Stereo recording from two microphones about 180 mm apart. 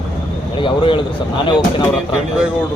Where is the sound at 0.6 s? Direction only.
30° left (ahead or behind).